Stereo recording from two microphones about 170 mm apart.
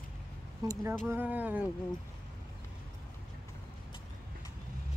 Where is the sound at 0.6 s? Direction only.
20° right (ahead or behind).